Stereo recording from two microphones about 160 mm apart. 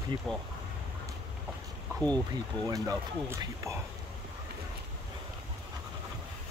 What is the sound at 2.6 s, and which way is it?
Speech, 20° right (ahead or behind).